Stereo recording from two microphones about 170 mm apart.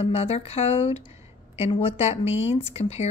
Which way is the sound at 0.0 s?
35° left (ahead or behind).